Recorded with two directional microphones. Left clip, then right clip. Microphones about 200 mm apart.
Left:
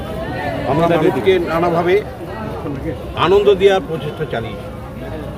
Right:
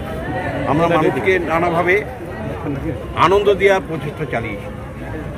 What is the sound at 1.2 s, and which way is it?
Speech, 10° left (ahead or behind).